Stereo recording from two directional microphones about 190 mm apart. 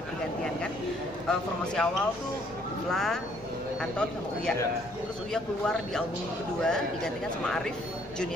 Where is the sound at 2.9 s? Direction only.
Centre (ahead or behind).